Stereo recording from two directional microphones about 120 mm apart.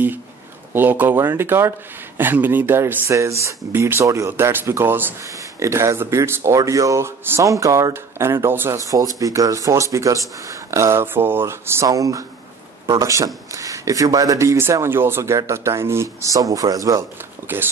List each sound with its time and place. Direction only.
0.7 s speech: 15° right (ahead or behind)
17.5 s speech: 15° right (ahead or behind)